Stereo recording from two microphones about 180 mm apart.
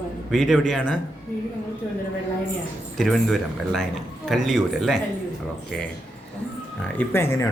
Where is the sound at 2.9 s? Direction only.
Centre (ahead or behind).